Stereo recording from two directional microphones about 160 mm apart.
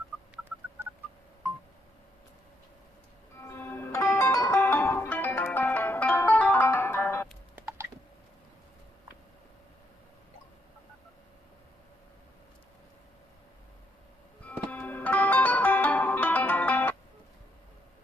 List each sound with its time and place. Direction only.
3.3 s music: 15° left (ahead or behind)
7.5 s a sound: 15° right (ahead or behind)
14.4 s music: 10° left (ahead or behind)